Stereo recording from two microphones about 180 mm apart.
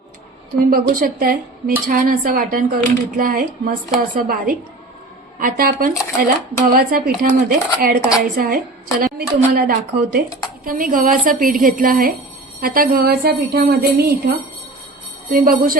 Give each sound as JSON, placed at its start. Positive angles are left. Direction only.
{"t": 0.7, "sound": "speech", "side_deg": -50}
{"t": 9.1, "sound": "jingle bell", "side_deg": -55}
{"t": 10.6, "sound": "speech", "side_deg": -50}
{"t": 12.5, "sound": "jingle bell", "side_deg": -50}
{"t": 15.3, "sound": "speech", "side_deg": -50}